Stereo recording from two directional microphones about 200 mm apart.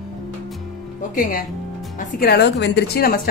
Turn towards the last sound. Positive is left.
turn(degrees=50)  # may be behind; listen again after turning